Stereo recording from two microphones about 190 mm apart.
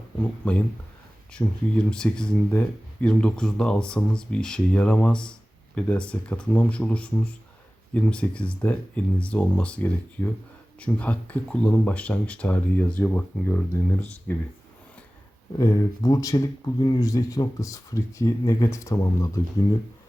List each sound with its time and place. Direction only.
0.2 s speech: 5° left (ahead or behind)
15.5 s speech: 15° left (ahead or behind)